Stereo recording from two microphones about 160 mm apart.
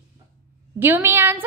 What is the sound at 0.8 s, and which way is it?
Speech, 15° right (ahead or behind).